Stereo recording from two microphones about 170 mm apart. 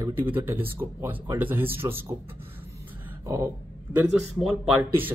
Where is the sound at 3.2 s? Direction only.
15° right (ahead or behind).